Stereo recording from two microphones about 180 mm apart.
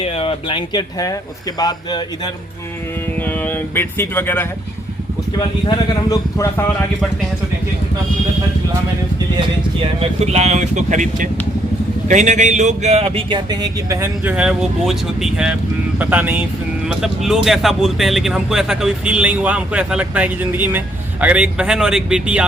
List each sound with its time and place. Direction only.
0.0 s speech: 30° left (ahead or behind)
3.2 s speech: 10° left (ahead or behind)
9.8 s speech: 35° right (ahead or behind); by 22.4 s 5° right (ahead or behind)